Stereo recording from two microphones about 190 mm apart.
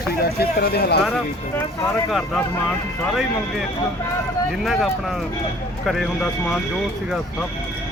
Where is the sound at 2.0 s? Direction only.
Centre (ahead or behind).